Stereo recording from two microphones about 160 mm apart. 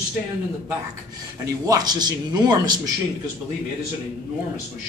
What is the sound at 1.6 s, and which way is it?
Speech, 25° right (ahead or behind).